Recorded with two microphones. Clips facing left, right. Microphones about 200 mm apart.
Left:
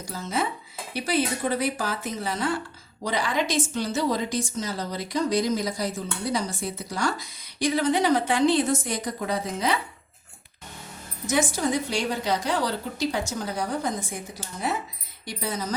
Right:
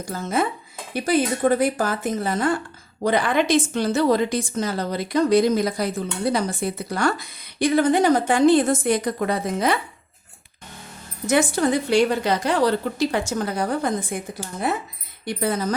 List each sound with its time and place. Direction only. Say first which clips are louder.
0.0 s a woman's voice: right 5 dB; 55° right (ahead or behind)
11.3 s a woman's voice: right 5 dB; 60° right (ahead or behind)